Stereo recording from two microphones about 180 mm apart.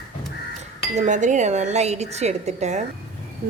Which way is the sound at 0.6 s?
40° right (ahead or behind).